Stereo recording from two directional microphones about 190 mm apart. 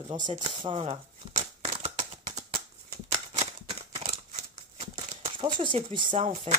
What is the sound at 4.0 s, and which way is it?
Scissors, 35° right (ahead or behind).